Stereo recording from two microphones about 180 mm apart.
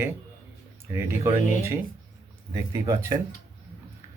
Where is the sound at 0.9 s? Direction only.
15° right (ahead or behind).